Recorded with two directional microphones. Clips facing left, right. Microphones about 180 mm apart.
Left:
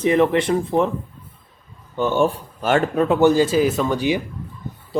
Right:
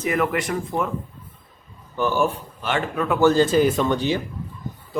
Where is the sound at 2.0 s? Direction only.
25° left (ahead or behind).